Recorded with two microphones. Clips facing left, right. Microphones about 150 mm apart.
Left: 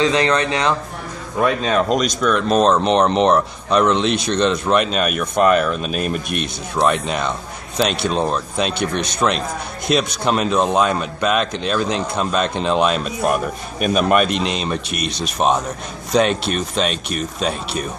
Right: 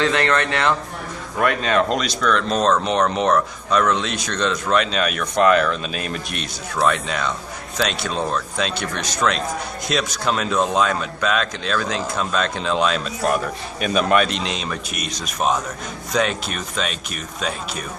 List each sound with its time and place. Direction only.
0.0 s speech: 15° left (ahead or behind)
2.2 s a man's voice: 15° left (ahead or behind)
15.0 s speech: 65° left (ahead or behind)
15.3 s a man's voice: 25° left (ahead or behind)